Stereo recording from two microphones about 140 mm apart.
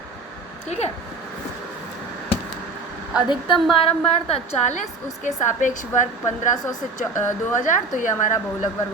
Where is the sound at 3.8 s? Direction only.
45° left (ahead or behind); by 6.5 s 65° left (ahead or behind).